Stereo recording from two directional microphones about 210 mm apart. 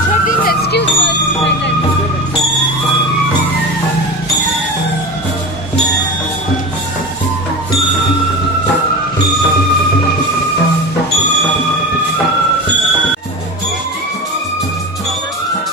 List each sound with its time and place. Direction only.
0.5 s music: 50° left (ahead or behind)